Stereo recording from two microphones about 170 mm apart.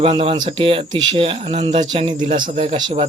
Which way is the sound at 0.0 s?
35° right (ahead or behind).